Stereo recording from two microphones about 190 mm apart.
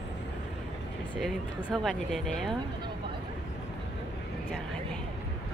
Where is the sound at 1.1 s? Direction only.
5° left (ahead or behind).